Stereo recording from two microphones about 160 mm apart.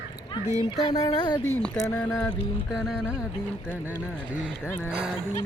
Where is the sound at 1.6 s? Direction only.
10° left (ahead or behind).